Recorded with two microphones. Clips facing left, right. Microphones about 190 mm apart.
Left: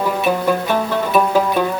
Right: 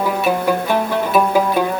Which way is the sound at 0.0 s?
10° right (ahead or behind).